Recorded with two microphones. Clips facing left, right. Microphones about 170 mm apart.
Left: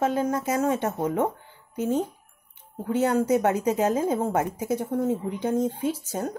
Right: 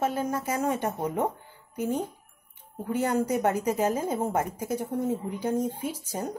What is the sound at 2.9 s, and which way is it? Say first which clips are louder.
Speech: left 3 dB; 10° right (ahead or behind).